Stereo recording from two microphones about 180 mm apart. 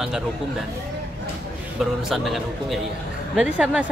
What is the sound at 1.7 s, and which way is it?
Speech, centre (ahead or behind).